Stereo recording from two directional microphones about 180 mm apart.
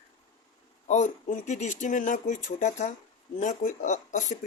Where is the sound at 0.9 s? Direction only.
40° left (ahead or behind).